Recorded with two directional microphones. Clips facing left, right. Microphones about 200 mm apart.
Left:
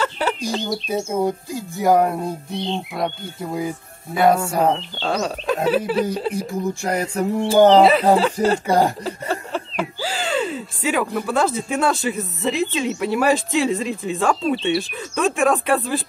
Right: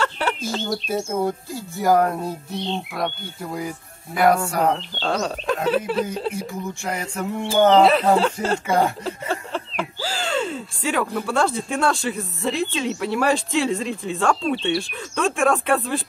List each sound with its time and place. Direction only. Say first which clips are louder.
0.0 s bird: left 2 dB; 5° left (ahead or behind)
0.6 s speech: left 1 dB; centre (ahead or behind)
1.0 s speech: left 2 dB; 20° left (ahead or behind)
2.5 s speech: left 2 dB; centre (ahead or behind)
3.3 s speech: left 4 dB; 20° left (ahead or behind)
4.7 s speech: left 1 dB; centre (ahead or behind)
6.3 s speech: left 5 dB; 35° left (ahead or behind)
7.8 s speech: left 2 dB; centre (ahead or behind)
8.6 s speech: right 1 dB; 35° left (ahead or behind)
9.0 s speech: left 1 dB; 5° left (ahead or behind)